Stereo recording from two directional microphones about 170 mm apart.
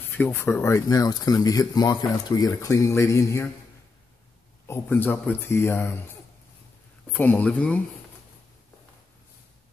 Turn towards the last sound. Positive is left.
turn(degrees=10)  # may be behind; listen again after turning